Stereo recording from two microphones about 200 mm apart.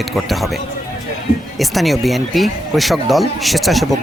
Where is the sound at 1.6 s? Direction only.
Centre (ahead or behind).